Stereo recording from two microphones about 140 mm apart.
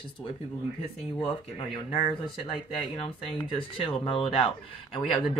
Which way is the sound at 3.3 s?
40° left (ahead or behind).